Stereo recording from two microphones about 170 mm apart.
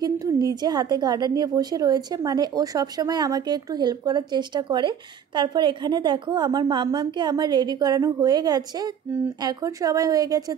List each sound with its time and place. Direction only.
0.0 s a woman's voice: 20° right (ahead or behind)